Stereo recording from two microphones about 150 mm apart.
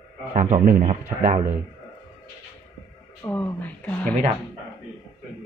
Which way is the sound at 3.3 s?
10° left (ahead or behind).